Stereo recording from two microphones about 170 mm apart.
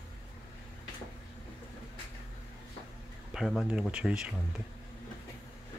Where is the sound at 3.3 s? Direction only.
Centre (ahead or behind).